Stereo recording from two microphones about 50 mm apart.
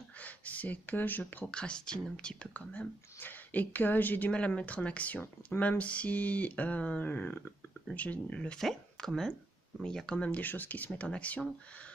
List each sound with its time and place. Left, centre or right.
0.2 s speech: left
1.4 s speech: left
3.2 s speech: left
4.3 s speech: left
8.5 s speech: centre
10.0 s speech: left
10.4 s speech: left